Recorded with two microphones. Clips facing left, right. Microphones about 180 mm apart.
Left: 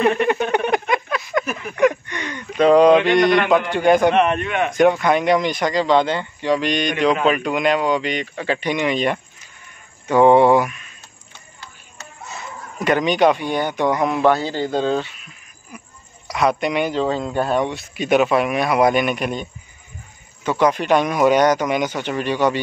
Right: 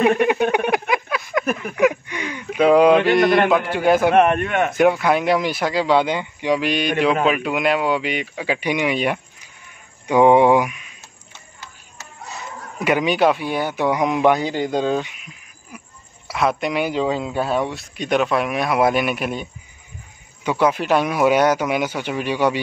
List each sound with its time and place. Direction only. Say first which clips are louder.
0.2 s a sound: right 1 dB; 10° right (ahead or behind)
1.4 s a sound: right 4 dB; 50° right (ahead or behind)
1.8 s a sound: left 2 dB; 10° right (ahead or behind)
3.7 s speech: left 3 dB; 5° right (ahead or behind)
4.1 s a man's voice: right 2 dB; 50° right (ahead or behind)
4.7 s a man's voice: left 2 dB; 5° right (ahead or behind)
12.7 s a man's voice: left 1 dB; 10° right (ahead or behind)
16.3 s speech: left 2 dB; centre (ahead or behind)
20.4 s a man's voice: left 1 dB; 10° right (ahead or behind)